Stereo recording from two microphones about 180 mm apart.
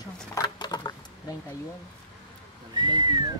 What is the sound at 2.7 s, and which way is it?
Speech, 25° right (ahead or behind).